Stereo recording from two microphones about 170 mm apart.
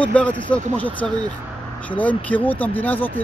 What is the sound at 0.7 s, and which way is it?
Speech, 10° left (ahead or behind).